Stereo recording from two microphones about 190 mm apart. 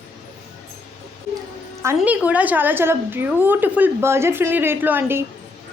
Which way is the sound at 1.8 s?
10° right (ahead or behind).